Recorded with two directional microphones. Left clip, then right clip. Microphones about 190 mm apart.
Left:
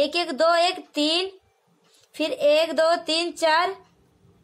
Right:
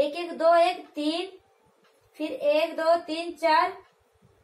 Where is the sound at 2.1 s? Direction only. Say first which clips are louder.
Left 5 dB; 45° left (ahead or behind).